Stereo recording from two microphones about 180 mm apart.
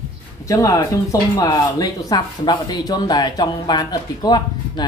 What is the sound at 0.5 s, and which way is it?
Speech, 20° left (ahead or behind).